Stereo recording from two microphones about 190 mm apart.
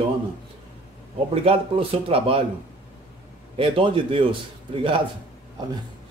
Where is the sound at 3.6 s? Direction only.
30° right (ahead or behind).